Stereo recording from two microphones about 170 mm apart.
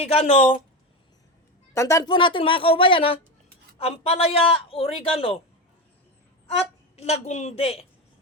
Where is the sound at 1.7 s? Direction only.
20° left (ahead or behind); by 5.4 s 35° left (ahead or behind).